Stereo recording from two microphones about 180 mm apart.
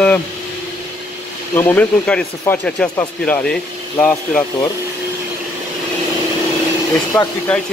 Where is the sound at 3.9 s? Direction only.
15° left (ahead or behind).